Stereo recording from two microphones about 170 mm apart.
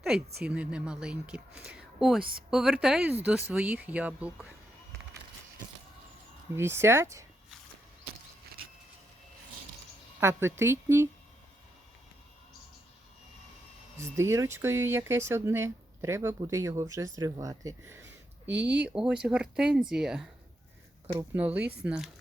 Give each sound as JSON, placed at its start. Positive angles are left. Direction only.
{"t": 0.4, "sound": "speech", "side_deg": -5}
{"t": 6.6, "sound": "speech", "side_deg": -15}
{"t": 10.2, "sound": "speech", "side_deg": -15}
{"t": 14.0, "sound": "speech", "side_deg": -15}
{"t": 18.4, "sound": "speech", "side_deg": -90}
{"t": 18.8, "sound": "speech", "side_deg": -5}